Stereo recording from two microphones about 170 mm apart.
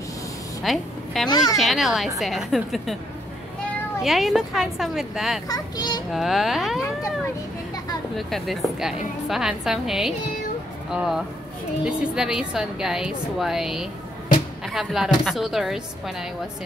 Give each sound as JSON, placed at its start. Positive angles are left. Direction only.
{"t": 0.7, "sound": "a woman's voice", "side_deg": 0}
{"t": 1.3, "sound": "speech", "side_deg": 20}
{"t": 1.6, "sound": "a woman's voice", "side_deg": 0}
{"t": 4.0, "sound": "a woman's voice", "side_deg": 0}
{"t": 5.5, "sound": "a child's voice", "side_deg": 25}
{"t": 6.1, "sound": "a woman's voice", "side_deg": 0}
{"t": 8.2, "sound": "a woman's voice", "side_deg": 0}